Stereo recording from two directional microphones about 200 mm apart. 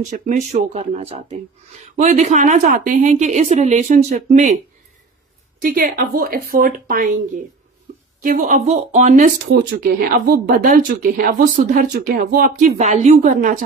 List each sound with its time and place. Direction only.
0.0 s speech: 35° right (ahead or behind)
5.6 s speech: 45° right (ahead or behind)